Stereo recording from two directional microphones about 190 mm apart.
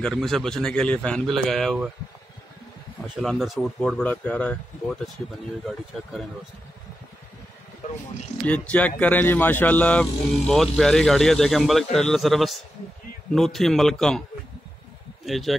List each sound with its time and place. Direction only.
0.0 s speech: 5° left (ahead or behind)
3.2 s speech: centre (ahead or behind)
7.8 s a sound: 40° left (ahead or behind)
8.5 s speech: 5° left (ahead or behind)
15.2 s speech: centre (ahead or behind)